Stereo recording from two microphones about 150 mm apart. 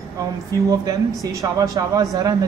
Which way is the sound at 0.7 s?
25° right (ahead or behind).